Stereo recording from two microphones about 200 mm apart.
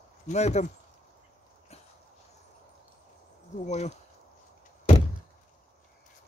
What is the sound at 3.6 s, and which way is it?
Speech, 35° left (ahead or behind).